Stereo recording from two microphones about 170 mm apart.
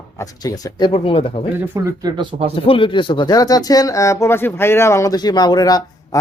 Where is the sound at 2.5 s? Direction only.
30° left (ahead or behind).